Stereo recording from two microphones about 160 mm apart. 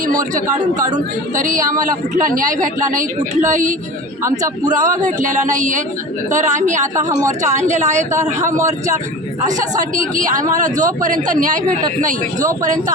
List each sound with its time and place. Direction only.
1.4 s a woman's voice: 55° right (ahead or behind)
4.2 s a man's voice: 20° right (ahead or behind)
4.9 s a woman's voice: 55° right (ahead or behind)
7.1 s a man's voice: 20° right (ahead or behind)
7.5 s a woman's voice: 45° right (ahead or behind)
8.1 s a man's voice: 20° right (ahead or behind)
9.9 s speech: 55° right (ahead or behind)